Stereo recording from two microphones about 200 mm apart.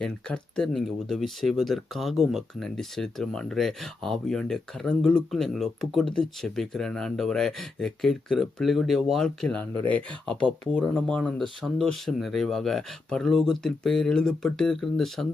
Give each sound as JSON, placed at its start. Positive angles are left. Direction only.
{"t": 0.0, "sound": "speech", "side_deg": 5}